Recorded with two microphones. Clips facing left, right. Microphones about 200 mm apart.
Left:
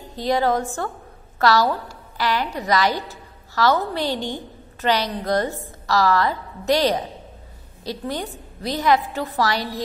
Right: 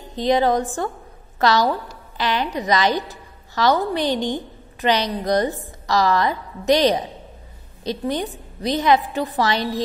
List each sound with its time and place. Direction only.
0.1 s a woman's voice: 20° right (ahead or behind)